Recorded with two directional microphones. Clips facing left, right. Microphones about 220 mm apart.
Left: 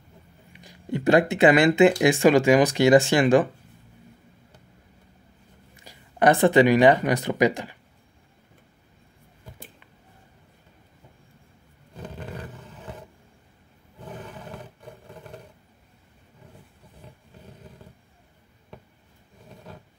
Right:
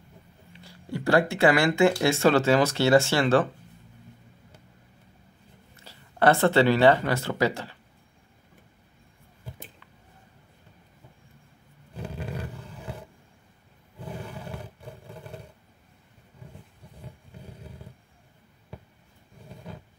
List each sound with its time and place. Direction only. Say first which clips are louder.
0.5 s speech: left 5 dB; 15° left (ahead or behind)
5.9 s speech: left 2 dB; 15° left (ahead or behind)
11.9 s roar: right 2 dB; 10° right (ahead or behind)